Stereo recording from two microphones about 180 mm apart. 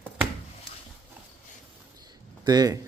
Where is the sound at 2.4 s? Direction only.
20° right (ahead or behind).